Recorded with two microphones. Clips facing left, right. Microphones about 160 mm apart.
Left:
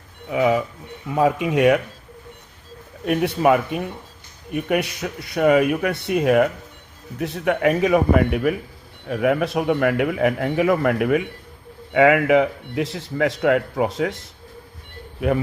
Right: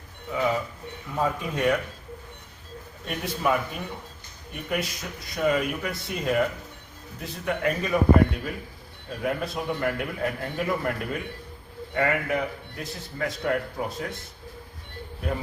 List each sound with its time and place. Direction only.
0.3 s speech: 90° left
3.1 s a man's voice: 65° left (ahead or behind); by 14.2 s 90° left